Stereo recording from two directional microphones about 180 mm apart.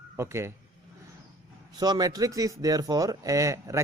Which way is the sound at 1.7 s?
20° right (ahead or behind).